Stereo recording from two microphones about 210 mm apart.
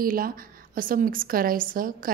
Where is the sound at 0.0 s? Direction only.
45° right (ahead or behind).